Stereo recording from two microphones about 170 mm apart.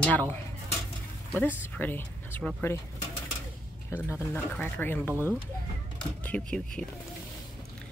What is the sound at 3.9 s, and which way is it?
Dishes, 15° left (ahead or behind).